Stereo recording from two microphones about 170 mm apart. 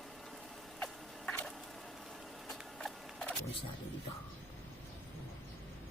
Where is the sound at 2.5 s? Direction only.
5° left (ahead or behind).